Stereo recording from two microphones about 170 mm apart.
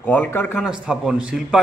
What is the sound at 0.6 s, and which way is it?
Speech, 5° right (ahead or behind).